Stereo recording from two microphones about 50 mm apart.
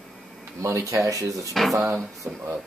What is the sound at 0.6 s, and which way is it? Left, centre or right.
Speech, right.